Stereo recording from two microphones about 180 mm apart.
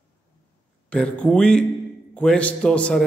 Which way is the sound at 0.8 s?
5° left (ahead or behind).